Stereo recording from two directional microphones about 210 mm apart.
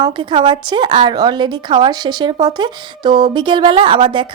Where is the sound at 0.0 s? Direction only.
20° right (ahead or behind).